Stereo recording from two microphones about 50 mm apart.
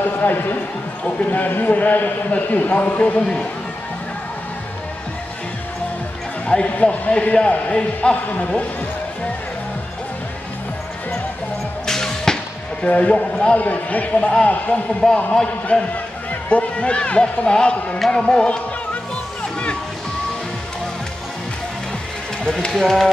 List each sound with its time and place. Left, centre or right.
0.0 s a man's voice: left; by 3.4 s centre
6.4 s a man's voice: left
11.8 s music: centre
12.8 s a man's voice: left
22.4 s speech: centre